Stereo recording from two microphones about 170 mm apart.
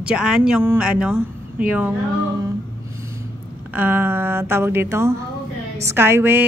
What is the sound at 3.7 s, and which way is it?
A woman's voice, 10° right (ahead or behind).